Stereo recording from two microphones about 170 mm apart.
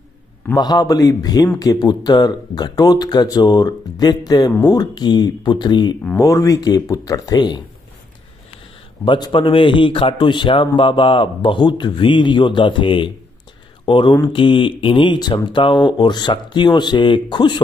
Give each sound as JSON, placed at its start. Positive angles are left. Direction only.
{"t": 0.6, "sound": "speech", "side_deg": 25}
{"t": 9.0, "sound": "speech", "side_deg": 30}